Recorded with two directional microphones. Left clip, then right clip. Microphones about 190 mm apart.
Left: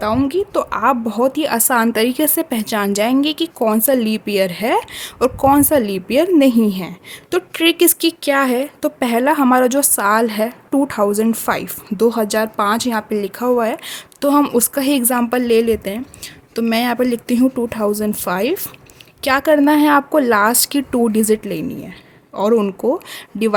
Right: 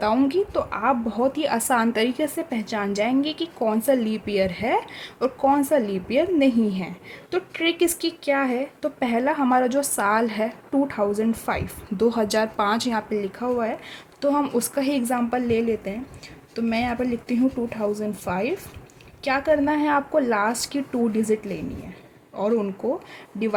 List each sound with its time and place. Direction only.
0.0 s a woman's voice: 25° left (ahead or behind)
0.5 s a woman's voice: 40° left (ahead or behind)